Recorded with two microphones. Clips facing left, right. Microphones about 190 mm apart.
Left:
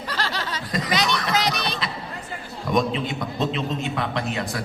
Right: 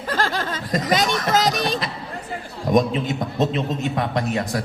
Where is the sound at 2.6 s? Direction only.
45° right (ahead or behind).